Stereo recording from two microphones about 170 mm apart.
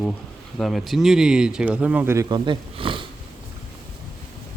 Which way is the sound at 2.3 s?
30° right (ahead or behind).